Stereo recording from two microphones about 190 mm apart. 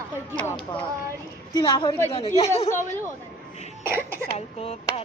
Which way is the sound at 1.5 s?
25° left (ahead or behind).